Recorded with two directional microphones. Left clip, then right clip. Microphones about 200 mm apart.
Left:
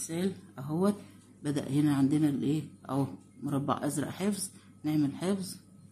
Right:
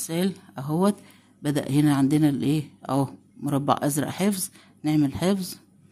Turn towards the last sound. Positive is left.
turn(degrees=-45)  # may be behind; listen again after turning